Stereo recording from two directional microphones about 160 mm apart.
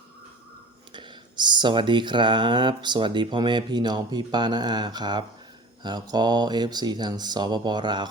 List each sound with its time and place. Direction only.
0.9 s speech: 30° right (ahead or behind)